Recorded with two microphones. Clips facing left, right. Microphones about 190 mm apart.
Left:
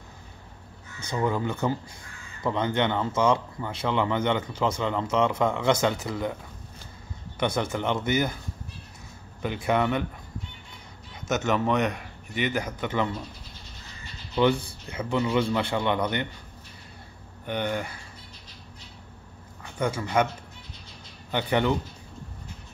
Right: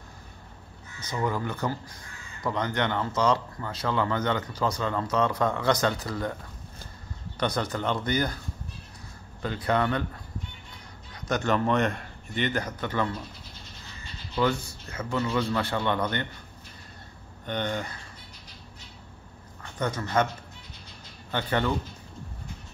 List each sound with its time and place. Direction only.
1.1 s speech: 20° left (ahead or behind)
7.7 s speech: 15° left (ahead or behind)
9.4 s speech: 15° left (ahead or behind)
11.3 s speech: 5° left (ahead or behind)
14.3 s speech: 15° left (ahead or behind)
17.5 s speech: 10° left (ahead or behind)
19.6 s speech: 10° left (ahead or behind)
21.3 s speech: 15° left (ahead or behind)